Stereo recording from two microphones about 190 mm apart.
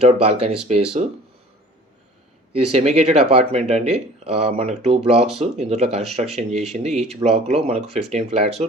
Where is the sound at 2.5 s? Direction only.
35° right (ahead or behind).